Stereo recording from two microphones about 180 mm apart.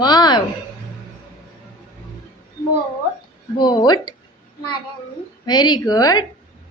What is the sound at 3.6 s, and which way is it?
Speech, 25° left (ahead or behind).